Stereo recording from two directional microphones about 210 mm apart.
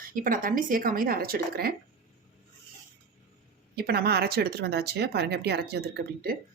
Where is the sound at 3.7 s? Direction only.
50° right (ahead or behind).